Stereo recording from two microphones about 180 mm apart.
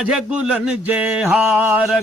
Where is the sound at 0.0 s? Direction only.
5° right (ahead or behind).